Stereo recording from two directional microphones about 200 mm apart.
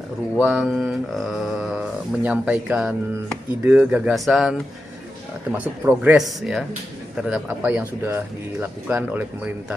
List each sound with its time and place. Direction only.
0.4 s speech: 5° right (ahead or behind)
5.6 s speech: 5° right (ahead or behind)